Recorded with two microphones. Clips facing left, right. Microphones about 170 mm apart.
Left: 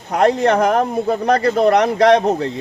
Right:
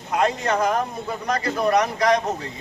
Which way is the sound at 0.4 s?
65° left (ahead or behind).